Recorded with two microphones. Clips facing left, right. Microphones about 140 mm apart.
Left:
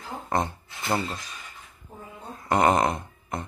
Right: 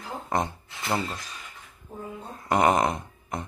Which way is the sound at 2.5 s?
10° right (ahead or behind).